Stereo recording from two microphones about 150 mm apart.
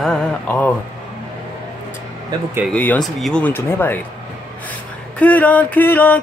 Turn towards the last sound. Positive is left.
turn(degrees=10)  # may be behind; listen again after turning